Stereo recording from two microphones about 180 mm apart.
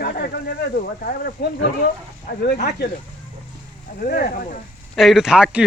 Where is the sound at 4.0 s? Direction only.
55° left (ahead or behind).